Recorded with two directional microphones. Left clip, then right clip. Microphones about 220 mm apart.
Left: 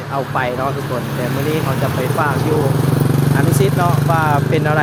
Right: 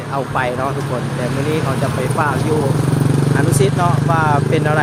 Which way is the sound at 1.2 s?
50° left (ahead or behind).